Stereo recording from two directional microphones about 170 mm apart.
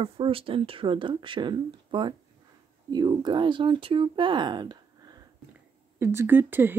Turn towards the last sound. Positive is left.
turn(degrees=-10)  # may be behind; listen again after turning